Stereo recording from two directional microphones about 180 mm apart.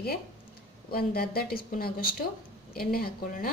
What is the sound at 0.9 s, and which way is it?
A woman's voice, 60° left (ahead or behind).